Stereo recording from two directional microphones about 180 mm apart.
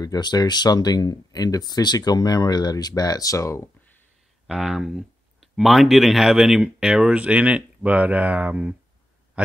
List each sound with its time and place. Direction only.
0.0 s speech: 20° left (ahead or behind)
4.5 s speech: centre (ahead or behind)